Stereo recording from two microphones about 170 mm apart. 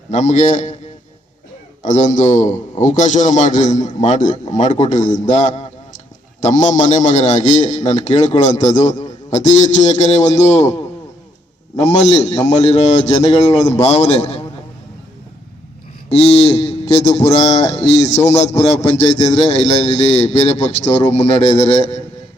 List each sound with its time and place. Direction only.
0.1 s a man's voice: 45° left (ahead or behind)
1.8 s a man's voice: 45° left (ahead or behind)
11.9 s a man's voice: 40° left (ahead or behind)
16.0 s a sound: 35° left (ahead or behind)
16.9 s a man's voice: 40° left (ahead or behind)